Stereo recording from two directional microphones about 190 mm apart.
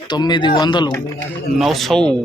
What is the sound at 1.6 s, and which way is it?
Speech, centre (ahead or behind).